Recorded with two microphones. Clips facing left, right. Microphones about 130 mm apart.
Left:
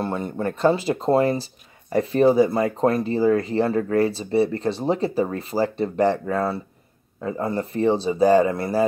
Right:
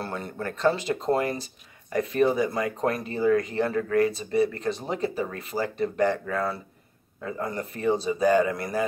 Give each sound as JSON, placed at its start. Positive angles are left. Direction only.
{"t": 0.4, "sound": "speech", "side_deg": 35}